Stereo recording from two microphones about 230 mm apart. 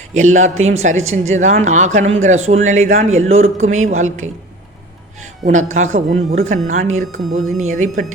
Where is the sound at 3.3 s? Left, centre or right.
Right.